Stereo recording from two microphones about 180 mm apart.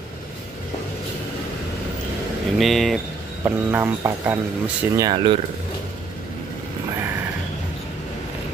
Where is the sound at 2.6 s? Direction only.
Centre (ahead or behind).